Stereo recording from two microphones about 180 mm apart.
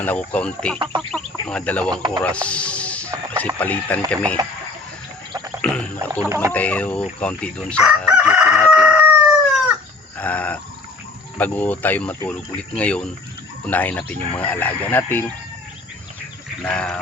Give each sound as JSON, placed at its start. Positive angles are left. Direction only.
{"t": 0.0, "sound": "speech", "side_deg": 10}
{"t": 1.1, "sound": "fowl", "side_deg": 5}
{"t": 1.9, "sound": "speech", "side_deg": -25}
{"t": 2.2, "sound": "music", "side_deg": 5}
{"t": 3.4, "sound": "speech", "side_deg": 10}
{"t": 5.6, "sound": "speech", "side_deg": 5}
{"t": 6.2, "sound": "speech", "side_deg": -15}
{"t": 6.5, "sound": "speech", "side_deg": 10}
{"t": 8.0, "sound": "chicken", "side_deg": -5}
{"t": 8.7, "sound": "crowing", "side_deg": -5}
{"t": 10.2, "sound": "a sound", "side_deg": 10}
{"t": 11.3, "sound": "speech", "side_deg": 10}
{"t": 16.6, "sound": "speech", "side_deg": 5}